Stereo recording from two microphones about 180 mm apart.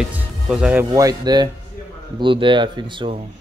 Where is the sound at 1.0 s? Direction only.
20° right (ahead or behind).